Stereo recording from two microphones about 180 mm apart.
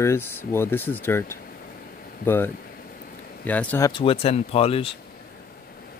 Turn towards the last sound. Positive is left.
turn(degrees=30)  # may be behind; listen again after turning